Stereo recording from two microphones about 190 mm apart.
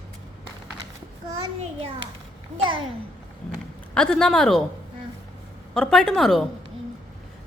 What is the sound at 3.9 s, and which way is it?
Speech, 5° left (ahead or behind).